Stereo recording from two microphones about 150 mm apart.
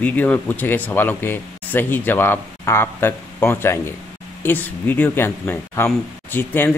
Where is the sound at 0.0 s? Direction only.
10° left (ahead or behind).